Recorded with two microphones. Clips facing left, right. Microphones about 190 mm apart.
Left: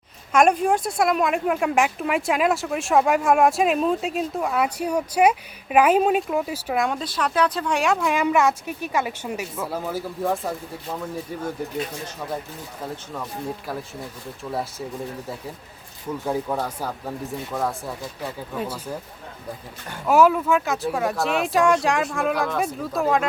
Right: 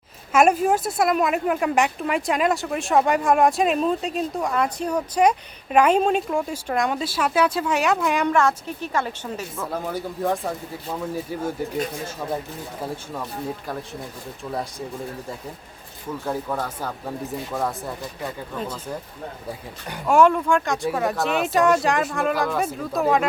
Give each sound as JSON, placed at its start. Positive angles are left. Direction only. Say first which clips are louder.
{"t": 0.3, "sound": "speech", "louder": "even", "side_deg": -5}
{"t": 14.5, "sound": "speech", "louder": "left 1 dB", "side_deg": 5}
{"t": 16.2, "sound": "speech", "louder": "left 2 dB", "side_deg": 10}
{"t": 20.1, "sound": "speech", "louder": "even", "side_deg": 5}